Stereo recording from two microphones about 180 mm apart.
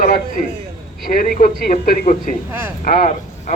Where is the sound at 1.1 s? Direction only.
55° left (ahead or behind).